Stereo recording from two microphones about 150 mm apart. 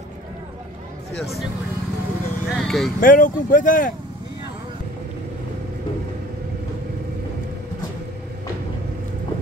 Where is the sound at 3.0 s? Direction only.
65° left (ahead or behind).